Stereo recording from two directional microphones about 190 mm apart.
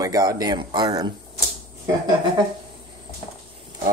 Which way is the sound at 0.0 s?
20° right (ahead or behind).